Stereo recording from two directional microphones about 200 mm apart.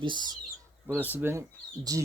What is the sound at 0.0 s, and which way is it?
Speech, 25° right (ahead or behind).